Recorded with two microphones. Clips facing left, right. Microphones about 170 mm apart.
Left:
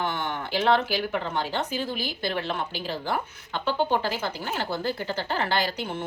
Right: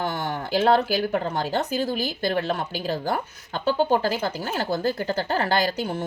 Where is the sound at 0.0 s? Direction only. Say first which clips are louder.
Right 2 dB; 40° right (ahead or behind).